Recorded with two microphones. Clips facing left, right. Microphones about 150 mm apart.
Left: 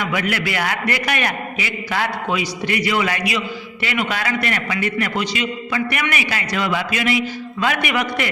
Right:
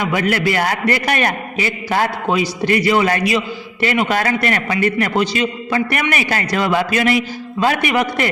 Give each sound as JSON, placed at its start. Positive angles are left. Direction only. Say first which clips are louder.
{"t": 0.1, "sound": "a man's voice", "louder": "right 5 dB", "side_deg": -40}